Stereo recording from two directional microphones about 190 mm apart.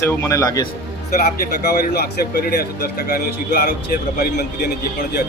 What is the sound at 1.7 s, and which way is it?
Speech, 55° left (ahead or behind).